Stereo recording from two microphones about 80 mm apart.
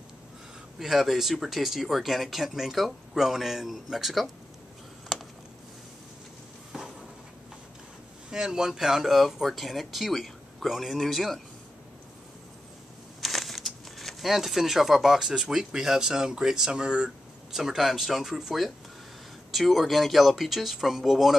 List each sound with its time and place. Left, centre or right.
0.7 s speech: centre
5.1 s a sound: centre
8.3 s speech: centre
13.2 s speech: centre